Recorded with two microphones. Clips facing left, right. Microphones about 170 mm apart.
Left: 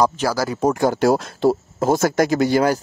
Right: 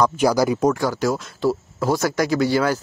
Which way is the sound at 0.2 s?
15° right (ahead or behind).